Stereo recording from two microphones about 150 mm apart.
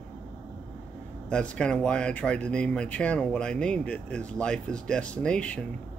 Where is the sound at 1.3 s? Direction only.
5° left (ahead or behind).